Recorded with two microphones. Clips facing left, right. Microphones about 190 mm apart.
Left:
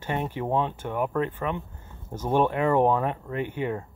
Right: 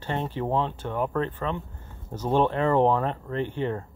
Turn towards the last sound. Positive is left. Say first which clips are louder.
# right 1 dB
turn(degrees=10)  # may be behind; listen again after turning